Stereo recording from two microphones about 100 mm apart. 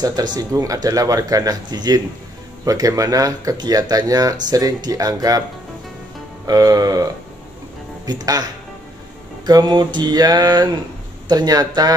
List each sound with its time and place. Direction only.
0.0 s speech: 45° right (ahead or behind)
6.4 s speech: 40° right (ahead or behind)
9.5 s a sound: 45° right (ahead or behind)
11.2 s speech: 40° right (ahead or behind)